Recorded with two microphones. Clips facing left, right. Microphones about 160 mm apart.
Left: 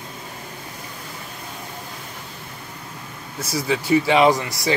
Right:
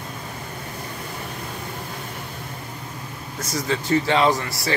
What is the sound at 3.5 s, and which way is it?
Speech, 10° left (ahead or behind).